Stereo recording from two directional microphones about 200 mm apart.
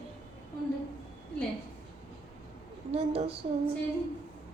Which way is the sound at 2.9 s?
30° right (ahead or behind).